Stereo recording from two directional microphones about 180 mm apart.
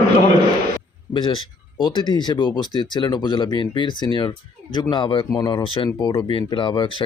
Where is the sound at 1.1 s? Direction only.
25° left (ahead or behind).